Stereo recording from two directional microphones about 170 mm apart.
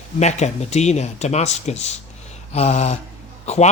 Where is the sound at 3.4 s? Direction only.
40° left (ahead or behind).